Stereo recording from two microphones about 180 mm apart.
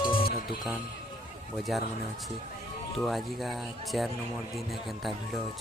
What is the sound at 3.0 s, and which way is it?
Speech, centre (ahead or behind).